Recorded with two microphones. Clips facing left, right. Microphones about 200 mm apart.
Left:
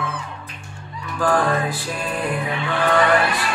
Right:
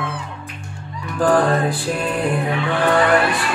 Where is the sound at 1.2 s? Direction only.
45° right (ahead or behind).